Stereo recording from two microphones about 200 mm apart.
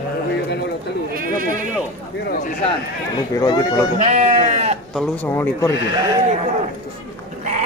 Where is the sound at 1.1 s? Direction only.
45° right (ahead or behind).